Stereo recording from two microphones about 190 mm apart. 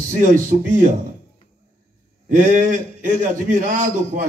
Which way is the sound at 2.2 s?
45° right (ahead or behind).